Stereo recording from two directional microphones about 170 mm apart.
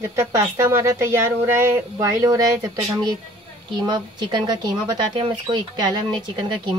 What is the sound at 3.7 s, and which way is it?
Speech, 25° right (ahead or behind).